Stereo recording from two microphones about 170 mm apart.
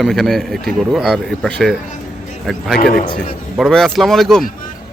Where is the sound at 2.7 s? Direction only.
55° left (ahead or behind).